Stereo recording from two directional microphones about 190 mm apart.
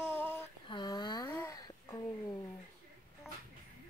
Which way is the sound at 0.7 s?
25° left (ahead or behind).